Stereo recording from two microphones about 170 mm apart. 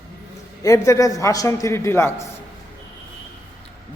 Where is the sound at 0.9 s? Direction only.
20° left (ahead or behind).